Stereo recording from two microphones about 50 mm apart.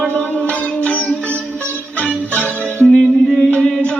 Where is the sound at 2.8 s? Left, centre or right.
Centre.